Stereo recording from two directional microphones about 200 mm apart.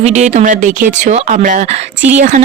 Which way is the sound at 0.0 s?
35° right (ahead or behind).